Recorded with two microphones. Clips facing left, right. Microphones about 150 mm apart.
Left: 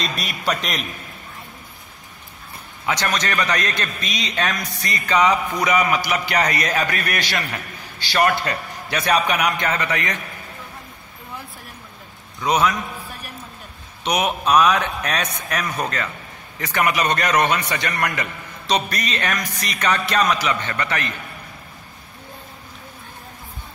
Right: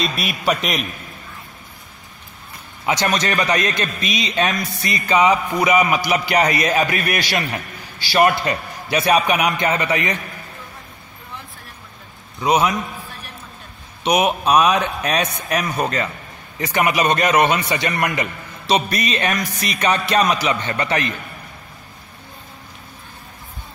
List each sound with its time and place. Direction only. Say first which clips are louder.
0.0 s a man's voice: right 4 dB; 10° right (ahead or behind)
3.1 s a man's voice: right 3 dB; 15° right (ahead or behind)
14.0 s a man's voice: right 4 dB; 15° right (ahead or behind)
17.4 s a man's voice: right 3 dB; 10° right (ahead or behind)